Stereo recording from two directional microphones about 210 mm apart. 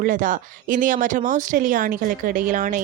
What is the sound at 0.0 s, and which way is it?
Speech, 40° right (ahead or behind).